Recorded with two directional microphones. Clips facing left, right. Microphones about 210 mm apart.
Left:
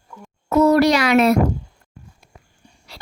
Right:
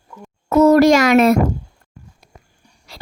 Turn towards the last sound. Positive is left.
turn(degrees=-45)  # may be behind; listen again after turning